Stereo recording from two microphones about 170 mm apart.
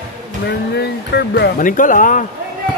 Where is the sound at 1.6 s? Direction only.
50° left (ahead or behind).